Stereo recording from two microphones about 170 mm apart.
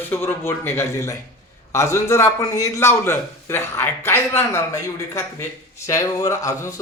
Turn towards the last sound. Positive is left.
turn(degrees=15)  # may be behind; listen again after turning